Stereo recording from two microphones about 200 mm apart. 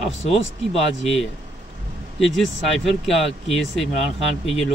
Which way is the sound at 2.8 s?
Centre (ahead or behind).